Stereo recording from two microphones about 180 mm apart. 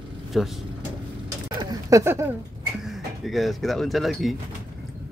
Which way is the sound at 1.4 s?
20° right (ahead or behind).